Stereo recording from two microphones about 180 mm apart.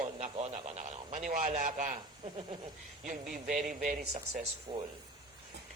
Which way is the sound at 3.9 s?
40° right (ahead or behind).